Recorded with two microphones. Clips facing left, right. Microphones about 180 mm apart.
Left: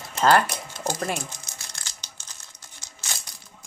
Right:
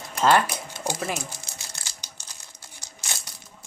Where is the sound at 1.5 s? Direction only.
30° right (ahead or behind).